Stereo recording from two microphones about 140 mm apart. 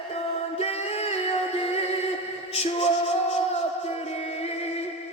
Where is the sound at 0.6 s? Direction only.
50° left (ahead or behind).